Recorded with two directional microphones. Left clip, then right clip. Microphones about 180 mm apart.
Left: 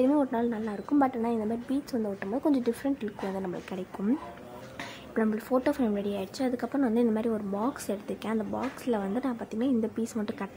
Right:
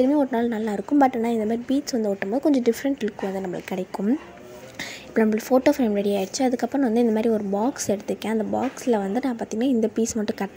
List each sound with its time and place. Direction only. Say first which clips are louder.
0.0 s speech: right 5 dB; 20° right (ahead or behind)
5.1 s speech: right 8 dB; 30° right (ahead or behind)